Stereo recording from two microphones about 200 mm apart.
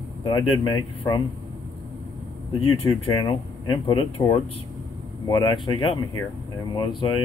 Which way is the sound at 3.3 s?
25° left (ahead or behind).